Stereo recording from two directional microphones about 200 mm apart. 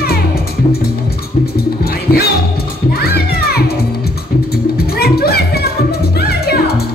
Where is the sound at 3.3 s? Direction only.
50° left (ahead or behind).